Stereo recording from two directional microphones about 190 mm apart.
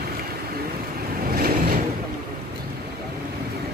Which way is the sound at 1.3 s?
50° right (ahead or behind).